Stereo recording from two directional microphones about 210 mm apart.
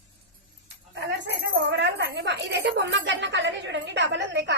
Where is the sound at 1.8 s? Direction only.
55° right (ahead or behind).